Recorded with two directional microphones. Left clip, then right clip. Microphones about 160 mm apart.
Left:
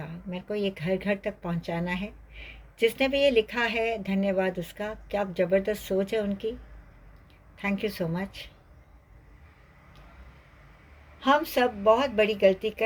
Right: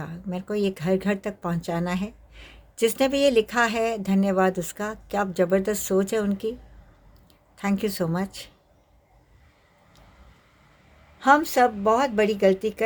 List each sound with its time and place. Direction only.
0.0 s speech: 45° right (ahead or behind)
7.6 s speech: 45° right (ahead or behind)
11.2 s speech: 45° right (ahead or behind)